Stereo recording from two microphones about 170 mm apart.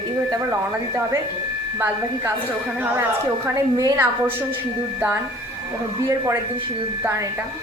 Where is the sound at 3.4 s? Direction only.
20° right (ahead or behind).